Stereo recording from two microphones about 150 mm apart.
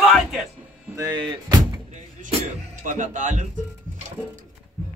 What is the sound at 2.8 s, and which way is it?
Speech, 55° right (ahead or behind).